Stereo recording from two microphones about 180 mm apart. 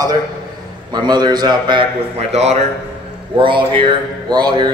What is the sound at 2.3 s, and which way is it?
A man's voice, 35° right (ahead or behind).